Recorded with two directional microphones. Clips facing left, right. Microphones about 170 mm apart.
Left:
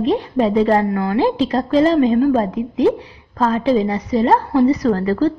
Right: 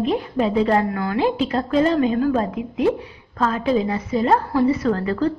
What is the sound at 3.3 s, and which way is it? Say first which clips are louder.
A woman's voice: left 4 dB; 35° left (ahead or behind).